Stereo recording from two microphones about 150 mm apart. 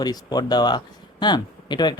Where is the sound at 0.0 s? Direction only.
25° left (ahead or behind).